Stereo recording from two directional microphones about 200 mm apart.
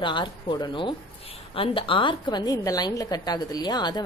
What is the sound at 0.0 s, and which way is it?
A woman's voice, 25° left (ahead or behind).